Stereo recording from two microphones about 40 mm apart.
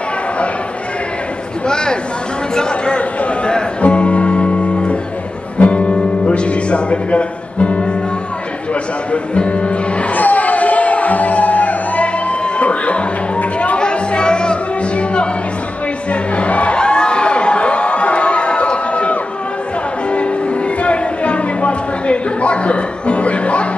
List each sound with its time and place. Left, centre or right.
1.7 s a man's voice: centre
3.8 s music: left
9.1 s music: left
10.1 s music: left
13.7 s music: left
20.8 s a sound: left